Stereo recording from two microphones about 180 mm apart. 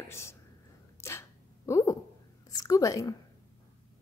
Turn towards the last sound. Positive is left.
turn(degrees=20)  # may be behind; listen again after turning